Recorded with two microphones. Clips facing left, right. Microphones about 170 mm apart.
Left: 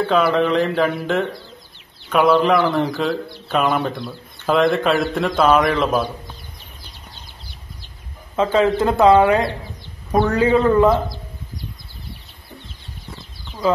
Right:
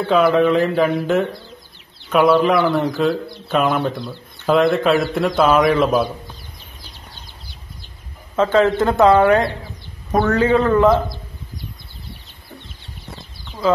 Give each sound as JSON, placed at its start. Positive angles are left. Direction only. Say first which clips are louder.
{"t": 0.1, "sound": "speech", "louder": "right 5 dB", "side_deg": -5}
{"t": 8.4, "sound": "speech", "louder": "right 1 dB", "side_deg": 10}